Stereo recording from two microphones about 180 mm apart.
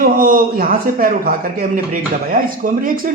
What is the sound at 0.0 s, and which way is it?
A man's voice, 50° right (ahead or behind).